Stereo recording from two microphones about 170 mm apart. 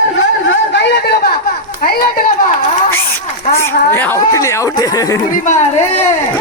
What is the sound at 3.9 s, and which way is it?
Speech, 10° left (ahead or behind).